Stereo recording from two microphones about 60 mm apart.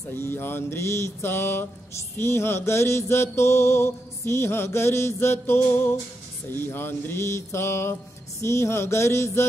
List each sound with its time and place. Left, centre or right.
0.1 s mantra: left